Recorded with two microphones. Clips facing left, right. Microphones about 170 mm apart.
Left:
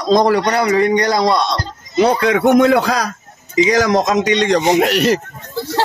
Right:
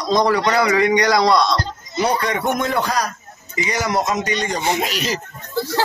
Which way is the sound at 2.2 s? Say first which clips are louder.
Left 9 dB; 80° left.